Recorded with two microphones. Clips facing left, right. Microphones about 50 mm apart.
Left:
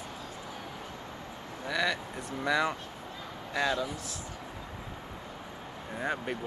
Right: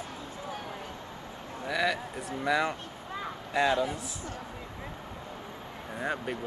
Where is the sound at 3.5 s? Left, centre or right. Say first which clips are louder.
Right 4 dB; right.